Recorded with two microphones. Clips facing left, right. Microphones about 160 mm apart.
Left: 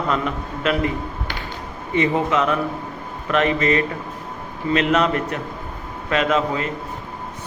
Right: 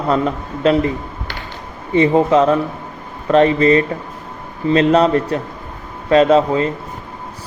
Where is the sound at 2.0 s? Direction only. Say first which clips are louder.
Right 7 dB; 35° right (ahead or behind).